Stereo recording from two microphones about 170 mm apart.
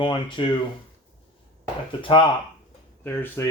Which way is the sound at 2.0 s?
30° left (ahead or behind).